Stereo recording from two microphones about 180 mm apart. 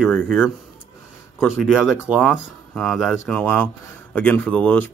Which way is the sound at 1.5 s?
Centre (ahead or behind).